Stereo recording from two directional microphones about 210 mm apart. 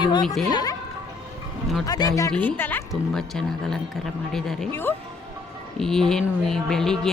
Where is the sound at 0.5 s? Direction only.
20° left (ahead or behind).